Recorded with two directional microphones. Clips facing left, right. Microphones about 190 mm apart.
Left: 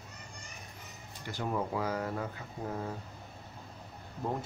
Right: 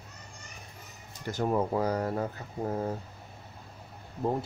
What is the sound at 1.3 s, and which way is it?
Speech, 45° right (ahead or behind).